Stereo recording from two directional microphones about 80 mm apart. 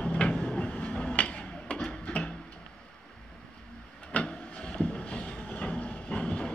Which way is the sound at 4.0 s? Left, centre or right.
Centre.